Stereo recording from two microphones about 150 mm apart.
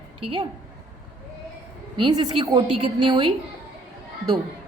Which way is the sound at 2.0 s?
30° right (ahead or behind).